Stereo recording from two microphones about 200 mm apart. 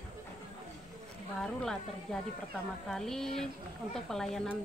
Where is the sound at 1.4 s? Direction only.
5° left (ahead or behind).